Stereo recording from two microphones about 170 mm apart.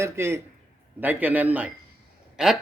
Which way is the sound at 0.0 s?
15° right (ahead or behind).